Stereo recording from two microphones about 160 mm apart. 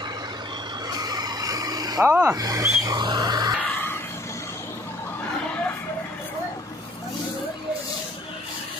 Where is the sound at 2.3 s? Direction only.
25° right (ahead or behind).